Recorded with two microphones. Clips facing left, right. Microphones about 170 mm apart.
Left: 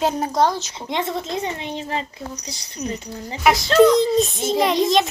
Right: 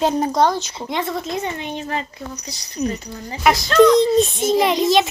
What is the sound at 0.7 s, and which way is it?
Speech, 25° left (ahead or behind).